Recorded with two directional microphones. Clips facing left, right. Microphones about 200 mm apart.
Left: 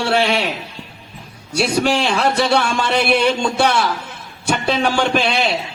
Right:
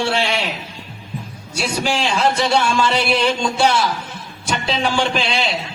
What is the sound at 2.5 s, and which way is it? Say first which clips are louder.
Speech: even; 60° left (ahead or behind).